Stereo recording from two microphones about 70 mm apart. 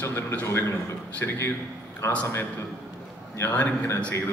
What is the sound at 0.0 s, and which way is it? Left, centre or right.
A man's voice, left.